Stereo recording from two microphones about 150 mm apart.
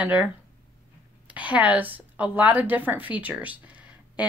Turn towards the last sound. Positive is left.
turn(degrees=-10)  # may be behind; listen again after turning